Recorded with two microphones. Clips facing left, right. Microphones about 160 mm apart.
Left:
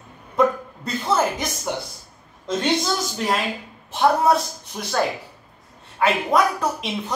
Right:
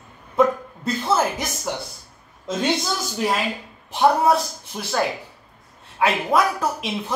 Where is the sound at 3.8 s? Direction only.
10° right (ahead or behind).